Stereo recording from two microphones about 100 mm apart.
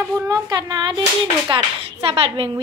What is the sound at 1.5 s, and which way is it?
Speech, 70° right (ahead or behind).